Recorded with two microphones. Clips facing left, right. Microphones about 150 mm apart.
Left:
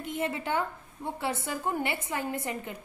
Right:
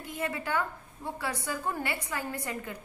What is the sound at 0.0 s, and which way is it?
A woman's voice, 25° left (ahead or behind).